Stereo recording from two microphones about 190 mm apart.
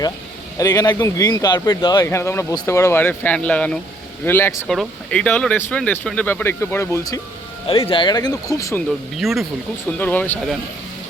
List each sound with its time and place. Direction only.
0.6 s speech: 20° left (ahead or behind)
7.7 s speech: 30° left (ahead or behind)
9.1 s speech: centre (ahead or behind)